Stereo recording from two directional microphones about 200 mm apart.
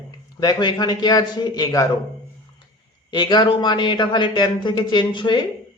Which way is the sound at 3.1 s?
20° left (ahead or behind).